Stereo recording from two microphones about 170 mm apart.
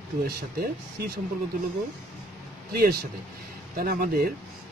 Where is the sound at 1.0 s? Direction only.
70° right (ahead or behind).